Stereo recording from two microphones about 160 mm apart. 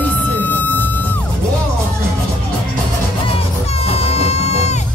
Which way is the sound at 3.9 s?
40° left (ahead or behind).